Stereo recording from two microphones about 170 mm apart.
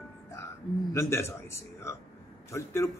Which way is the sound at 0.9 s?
15° left (ahead or behind).